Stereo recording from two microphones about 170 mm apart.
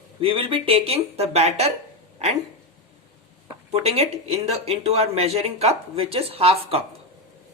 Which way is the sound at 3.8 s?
35° right (ahead or behind).